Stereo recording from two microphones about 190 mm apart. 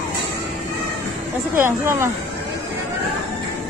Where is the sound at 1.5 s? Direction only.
10° right (ahead or behind).